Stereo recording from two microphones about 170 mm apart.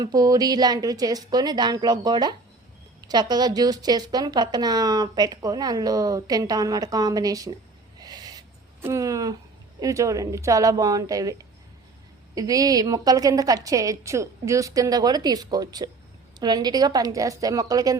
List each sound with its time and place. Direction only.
0.0 s speech: 20° right (ahead or behind)
7.9 s a sound: 25° right (ahead or behind)
9.8 s speech: 20° right (ahead or behind)